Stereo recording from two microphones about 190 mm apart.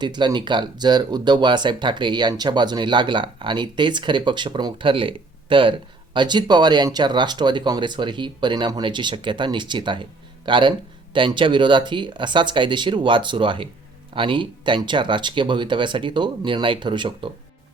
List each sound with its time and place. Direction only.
0.0 s speech: 25° right (ahead or behind)